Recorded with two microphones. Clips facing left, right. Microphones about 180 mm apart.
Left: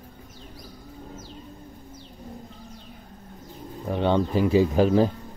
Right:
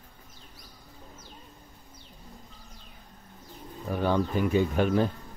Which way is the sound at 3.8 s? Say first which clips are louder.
Left 4 dB; 25° left (ahead or behind).